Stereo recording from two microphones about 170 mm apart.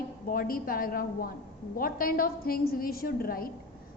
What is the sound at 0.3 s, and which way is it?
A woman's voice, 55° left (ahead or behind).